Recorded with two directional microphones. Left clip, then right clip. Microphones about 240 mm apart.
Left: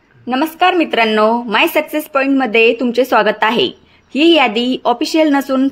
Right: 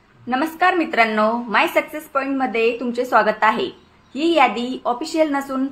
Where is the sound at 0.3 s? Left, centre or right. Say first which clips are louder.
Left 5 dB; left.